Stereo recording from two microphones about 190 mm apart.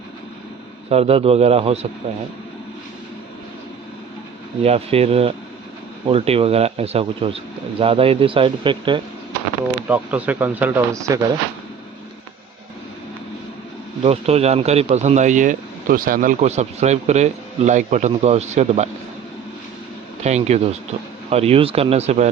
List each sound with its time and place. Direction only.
0.9 s speech: 35° right (ahead or behind)
4.6 s speech: 30° right (ahead or behind)
9.9 s speech: 10° right (ahead or behind)
14.0 s speech: 35° right (ahead or behind)
20.2 s speech: 35° right (ahead or behind)